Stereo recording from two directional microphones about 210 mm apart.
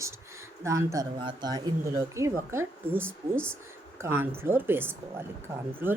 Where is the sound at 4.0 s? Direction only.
10° right (ahead or behind).